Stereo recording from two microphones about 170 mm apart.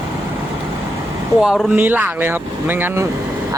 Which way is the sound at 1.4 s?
5° right (ahead or behind).